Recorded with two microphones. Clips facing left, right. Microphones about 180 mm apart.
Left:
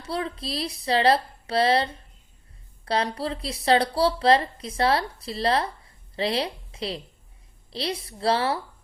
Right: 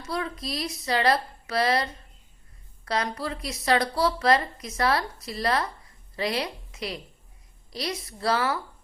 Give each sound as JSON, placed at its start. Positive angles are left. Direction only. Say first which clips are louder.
{"t": 0.0, "sound": "speech", "louder": "left 1 dB", "side_deg": 30}